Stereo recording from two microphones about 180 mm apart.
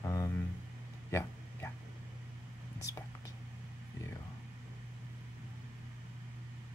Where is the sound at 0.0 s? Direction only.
20° left (ahead or behind).